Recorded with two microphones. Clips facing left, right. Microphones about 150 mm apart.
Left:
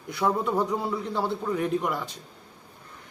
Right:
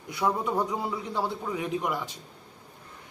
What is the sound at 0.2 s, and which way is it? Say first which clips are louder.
A man's voice: left 2 dB; centre (ahead or behind).